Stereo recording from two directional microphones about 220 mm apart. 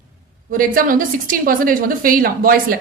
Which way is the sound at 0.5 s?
40° right (ahead or behind).